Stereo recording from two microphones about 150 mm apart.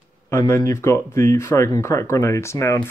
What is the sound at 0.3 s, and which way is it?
Speech, 25° left (ahead or behind).